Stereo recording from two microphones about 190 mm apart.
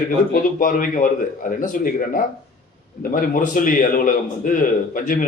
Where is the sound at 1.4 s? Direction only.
45° left (ahead or behind).